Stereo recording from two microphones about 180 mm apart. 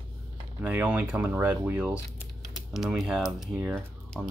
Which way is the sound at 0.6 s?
5° right (ahead or behind).